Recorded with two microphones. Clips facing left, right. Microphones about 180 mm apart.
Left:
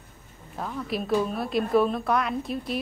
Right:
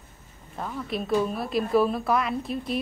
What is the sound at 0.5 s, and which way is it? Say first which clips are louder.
A woman's voice: left 1 dB; centre (ahead or behind).